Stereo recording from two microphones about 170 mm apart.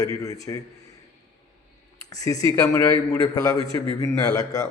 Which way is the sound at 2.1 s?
20° left (ahead or behind).